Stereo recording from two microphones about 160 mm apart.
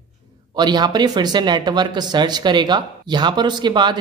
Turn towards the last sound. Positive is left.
turn(degrees=-30)  # may be behind; listen again after turning